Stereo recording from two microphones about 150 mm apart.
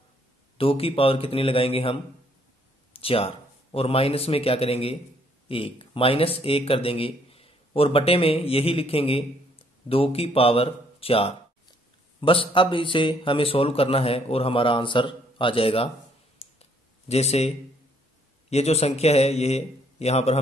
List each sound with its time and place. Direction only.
0.6 s a man's voice: 40° left (ahead or behind)
16.4 s clicking: 45° left (ahead or behind)
17.1 s a man's voice: 45° left (ahead or behind)
18.5 s a man's voice: 45° left (ahead or behind)